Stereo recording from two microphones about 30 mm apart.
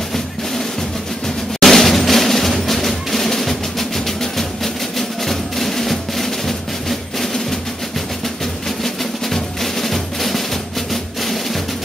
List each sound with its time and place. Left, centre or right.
1.6 s drum: centre
3.1 s percussion: centre
4.9 s music: centre
8.8 s drum: centre